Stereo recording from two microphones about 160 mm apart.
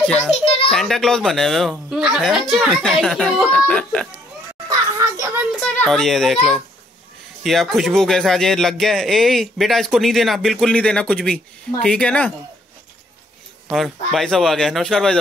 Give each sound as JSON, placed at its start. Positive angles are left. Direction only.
{"t": 0.7, "sound": "a man's voice", "side_deg": 5}
{"t": 4.6, "sound": "a sound", "side_deg": -20}
{"t": 5.5, "sound": "a man's voice", "side_deg": 5}
{"t": 13.7, "sound": "a man's voice", "side_deg": 0}